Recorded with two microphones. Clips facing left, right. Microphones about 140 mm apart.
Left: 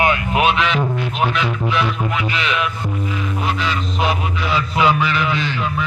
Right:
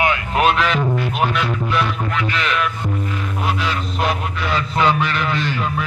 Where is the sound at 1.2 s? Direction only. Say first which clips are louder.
Left 3 dB; centre (ahead or behind).